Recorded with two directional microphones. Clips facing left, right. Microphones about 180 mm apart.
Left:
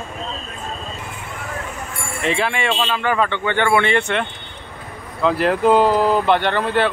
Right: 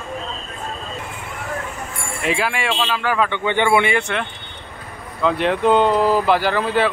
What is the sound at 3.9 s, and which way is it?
Speech, centre (ahead or behind).